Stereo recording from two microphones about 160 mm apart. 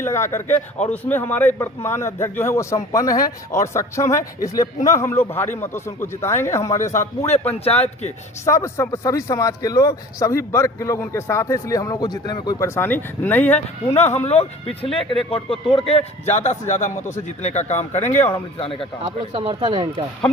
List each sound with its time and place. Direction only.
0.1 s speech: 15° left (ahead or behind)
7.3 s speech: 40° left (ahead or behind)
8.4 s speech: 15° left (ahead or behind)
13.9 s a man's voice: 40° left (ahead or behind)
18.6 s speech: 35° left (ahead or behind)
19.0 s speech: 30° right (ahead or behind)